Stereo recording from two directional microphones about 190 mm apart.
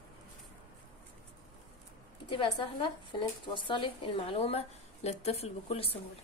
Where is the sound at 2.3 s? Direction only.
25° left (ahead or behind).